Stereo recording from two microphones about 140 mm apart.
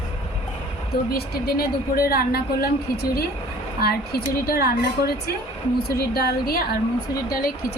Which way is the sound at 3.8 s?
90° left.